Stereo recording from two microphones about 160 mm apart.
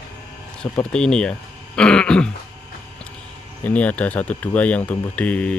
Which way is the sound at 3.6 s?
10° left (ahead or behind).